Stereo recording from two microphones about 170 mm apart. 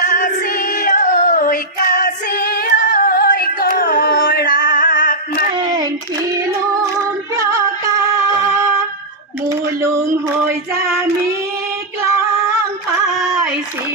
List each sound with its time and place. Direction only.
0.0 s female singing: 50° left (ahead or behind)
2.6 s singing: 55° left (ahead or behind)
6.3 s music: 20° right (ahead or behind)
9.5 s a sound: 15° right (ahead or behind)
10.5 s female singing: 15° right (ahead or behind)